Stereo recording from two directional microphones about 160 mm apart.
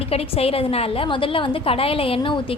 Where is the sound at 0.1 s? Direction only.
40° left (ahead or behind).